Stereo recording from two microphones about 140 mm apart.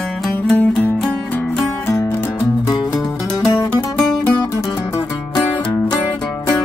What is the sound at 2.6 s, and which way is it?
Music, 25° left (ahead or behind).